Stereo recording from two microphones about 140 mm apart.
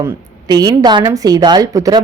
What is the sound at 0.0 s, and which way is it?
A woman's voice, 30° right (ahead or behind).